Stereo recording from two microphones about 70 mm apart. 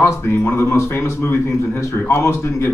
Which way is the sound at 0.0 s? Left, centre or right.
Left.